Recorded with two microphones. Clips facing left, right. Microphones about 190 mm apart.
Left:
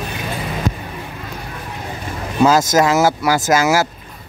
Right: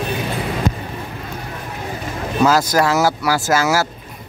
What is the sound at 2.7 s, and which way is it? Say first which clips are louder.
Speech: left 2 dB; 20° left (ahead or behind).